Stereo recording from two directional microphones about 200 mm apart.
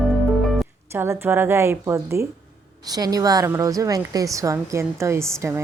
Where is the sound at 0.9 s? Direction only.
10° right (ahead or behind).